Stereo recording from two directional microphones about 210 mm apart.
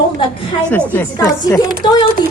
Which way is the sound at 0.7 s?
5° left (ahead or behind).